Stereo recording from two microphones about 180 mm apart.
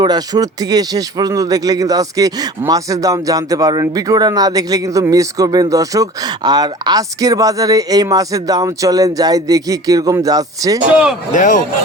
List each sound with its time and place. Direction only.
0.0 s speech: 20° right (ahead or behind)
11.3 s speech: 45° left (ahead or behind)